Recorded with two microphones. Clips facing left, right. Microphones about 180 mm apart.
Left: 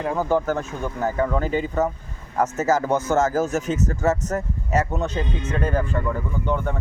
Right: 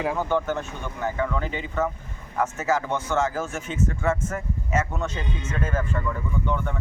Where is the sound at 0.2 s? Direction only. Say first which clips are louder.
Left 3 dB; 35° left (ahead or behind).